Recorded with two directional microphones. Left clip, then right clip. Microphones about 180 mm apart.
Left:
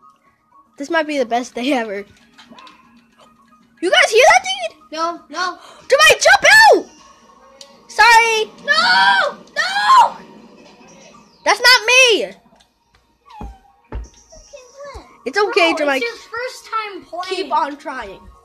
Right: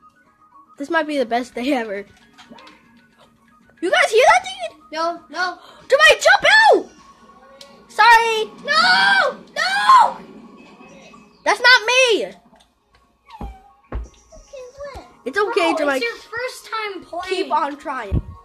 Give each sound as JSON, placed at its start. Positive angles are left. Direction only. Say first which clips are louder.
{"t": 0.7, "sound": "a woman's voice", "louder": "left 2 dB", "side_deg": 10}
{"t": 1.6, "sound": "a woman's voice", "louder": "left 2 dB", "side_deg": 20}
{"t": 3.8, "sound": "speech", "louder": "left 3 dB", "side_deg": 15}
{"t": 4.9, "sound": "speech", "louder": "even", "side_deg": 0}
{"t": 5.6, "sound": "a child's voice", "louder": "left 1 dB", "side_deg": 20}
{"t": 7.9, "sound": "speech", "louder": "left 2 dB", "side_deg": 15}
{"t": 8.6, "sound": "speech", "louder": "left 2 dB", "side_deg": 0}
{"t": 9.5, "sound": "a sound", "louder": "even", "side_deg": 0}
{"t": 11.4, "sound": "a woman's voice", "louder": "left 1 dB", "side_deg": 15}
{"t": 15.2, "sound": "a woman's voice", "louder": "left 3 dB", "side_deg": 10}
{"t": 16.3, "sound": "speech", "louder": "left 5 dB", "side_deg": -25}
{"t": 17.2, "sound": "speech", "louder": "left 1 dB", "side_deg": 0}